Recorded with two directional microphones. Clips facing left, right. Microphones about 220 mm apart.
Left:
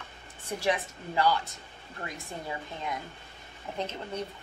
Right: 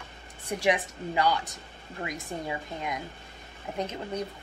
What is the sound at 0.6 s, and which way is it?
A woman's voice, 15° right (ahead or behind).